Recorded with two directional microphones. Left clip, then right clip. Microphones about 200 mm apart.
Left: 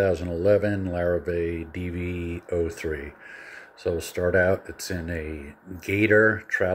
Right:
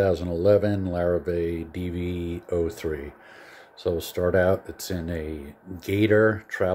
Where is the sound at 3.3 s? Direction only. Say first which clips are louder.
Left 4 dB; 90° right.